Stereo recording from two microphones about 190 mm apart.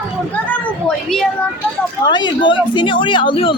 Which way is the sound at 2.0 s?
25° left (ahead or behind).